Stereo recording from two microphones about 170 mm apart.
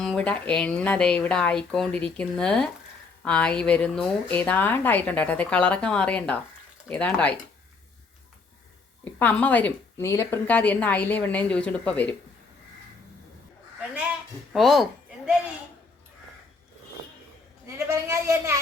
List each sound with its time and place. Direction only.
0.0 s a woman's voice: 5° left (ahead or behind)
9.1 s a woman's voice: 10° left (ahead or behind)
14.5 s speech: centre (ahead or behind)
17.7 s speech: 15° right (ahead or behind)